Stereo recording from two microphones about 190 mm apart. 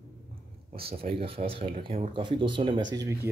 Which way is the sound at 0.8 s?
30° right (ahead or behind).